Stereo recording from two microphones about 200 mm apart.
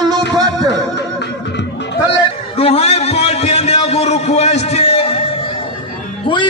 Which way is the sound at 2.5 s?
30° left (ahead or behind).